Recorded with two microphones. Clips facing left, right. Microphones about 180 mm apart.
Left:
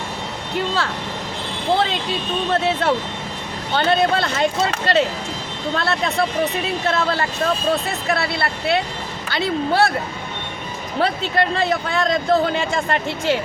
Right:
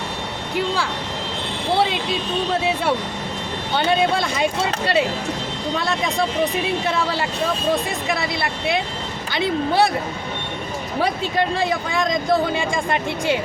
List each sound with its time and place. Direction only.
2.5 s a man's voice: 10° right (ahead or behind)
11.0 s a man's voice: 10° right (ahead or behind)